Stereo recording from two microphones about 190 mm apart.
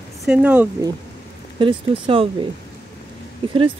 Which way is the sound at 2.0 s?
30° right (ahead or behind).